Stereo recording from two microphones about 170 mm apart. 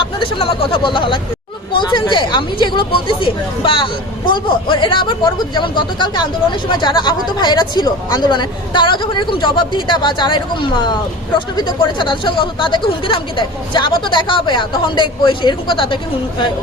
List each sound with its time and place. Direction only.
0.2 s speech: 35° left (ahead or behind)